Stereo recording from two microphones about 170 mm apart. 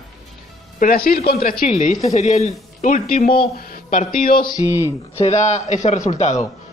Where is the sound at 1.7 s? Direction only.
45° left (ahead or behind).